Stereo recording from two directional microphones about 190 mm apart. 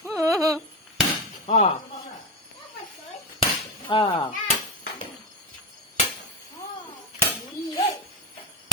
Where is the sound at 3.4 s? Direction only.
25° left (ahead or behind).